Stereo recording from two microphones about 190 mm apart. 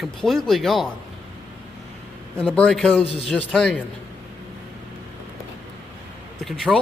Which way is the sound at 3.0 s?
30° left (ahead or behind).